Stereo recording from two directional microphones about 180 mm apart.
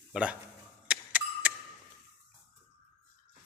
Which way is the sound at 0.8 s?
10° right (ahead or behind).